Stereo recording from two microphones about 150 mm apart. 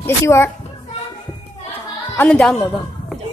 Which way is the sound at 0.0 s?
15° left (ahead or behind).